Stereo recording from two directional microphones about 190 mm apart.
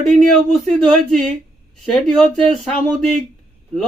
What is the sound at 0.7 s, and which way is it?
Speech, 5° left (ahead or behind).